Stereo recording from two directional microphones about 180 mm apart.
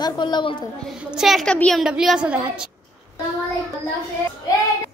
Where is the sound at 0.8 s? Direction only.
Centre (ahead or behind).